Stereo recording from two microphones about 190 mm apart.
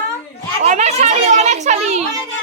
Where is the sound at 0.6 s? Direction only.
35° right (ahead or behind).